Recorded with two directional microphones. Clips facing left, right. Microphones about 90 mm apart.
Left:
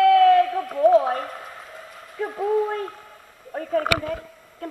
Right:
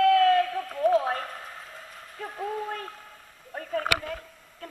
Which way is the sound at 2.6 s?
25° left (ahead or behind).